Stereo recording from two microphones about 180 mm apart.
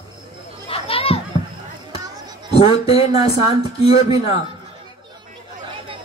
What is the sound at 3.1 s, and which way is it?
Speech, 20° right (ahead or behind).